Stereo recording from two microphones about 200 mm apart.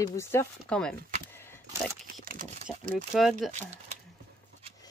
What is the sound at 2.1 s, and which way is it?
Speech, 45° right (ahead or behind).